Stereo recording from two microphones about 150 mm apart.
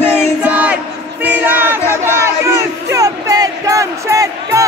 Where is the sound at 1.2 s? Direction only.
10° right (ahead or behind).